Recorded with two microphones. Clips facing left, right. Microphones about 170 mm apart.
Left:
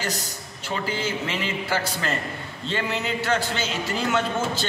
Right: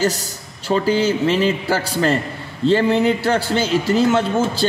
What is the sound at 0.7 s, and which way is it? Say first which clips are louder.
A man's voice: right 11 dB; 35° right (ahead or behind).